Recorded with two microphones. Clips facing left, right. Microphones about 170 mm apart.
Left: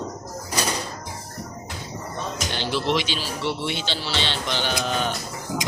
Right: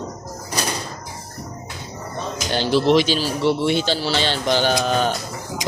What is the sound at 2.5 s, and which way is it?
Speech, 35° right (ahead or behind).